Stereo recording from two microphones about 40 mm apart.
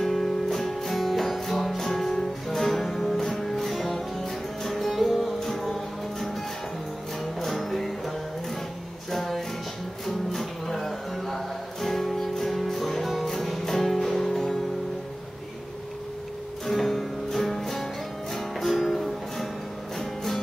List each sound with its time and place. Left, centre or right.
0.0 s music: centre
7.3 s music: centre
9.1 s music: centre
16.6 s music: centre